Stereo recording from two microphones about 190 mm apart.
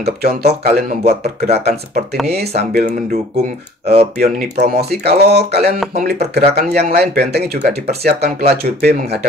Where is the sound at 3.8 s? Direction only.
35° right (ahead or behind).